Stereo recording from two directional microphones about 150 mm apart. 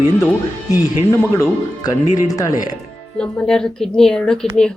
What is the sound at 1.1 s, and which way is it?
Speech, 20° left (ahead or behind).